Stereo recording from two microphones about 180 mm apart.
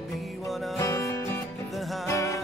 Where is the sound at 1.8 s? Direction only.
Centre (ahead or behind).